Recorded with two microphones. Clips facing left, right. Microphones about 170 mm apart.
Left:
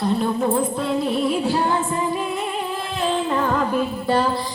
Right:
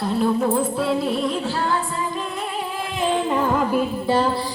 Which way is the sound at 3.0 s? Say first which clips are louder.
Right 1 dB; 10° right (ahead or behind).